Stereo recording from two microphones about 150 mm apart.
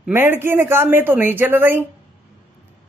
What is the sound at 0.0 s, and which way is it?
Speech, 15° right (ahead or behind).